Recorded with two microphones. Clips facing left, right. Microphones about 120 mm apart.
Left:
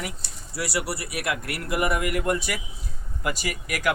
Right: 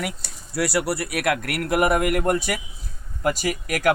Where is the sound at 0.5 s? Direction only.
60° right (ahead or behind).